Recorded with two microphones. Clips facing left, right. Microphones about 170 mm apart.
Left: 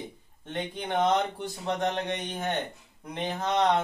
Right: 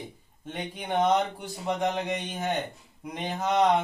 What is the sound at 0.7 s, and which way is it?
Speech, 10° right (ahead or behind).